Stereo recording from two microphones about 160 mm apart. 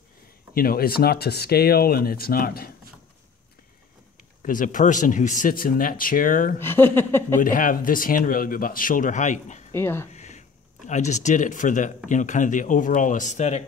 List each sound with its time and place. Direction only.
0.6 s speech: 70° left (ahead or behind)
4.4 s speech: 55° left (ahead or behind)
6.6 s speech: 15° left (ahead or behind)
7.3 s speech: 55° left (ahead or behind)
9.8 s speech: 15° left (ahead or behind)
10.1 s a sound: 45° left (ahead or behind)
10.9 s speech: 45° left (ahead or behind)